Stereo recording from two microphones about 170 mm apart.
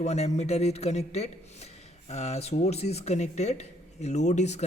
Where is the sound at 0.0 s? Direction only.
40° left (ahead or behind).